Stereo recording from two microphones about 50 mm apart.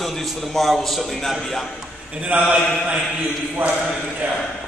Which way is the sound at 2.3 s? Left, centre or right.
Right.